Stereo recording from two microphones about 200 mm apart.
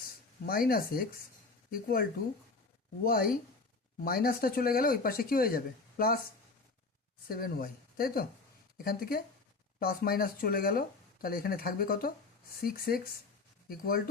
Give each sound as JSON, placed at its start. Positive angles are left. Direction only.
{"t": 0.4, "sound": "speech", "side_deg": 45}
{"t": 7.3, "sound": "speech", "side_deg": 45}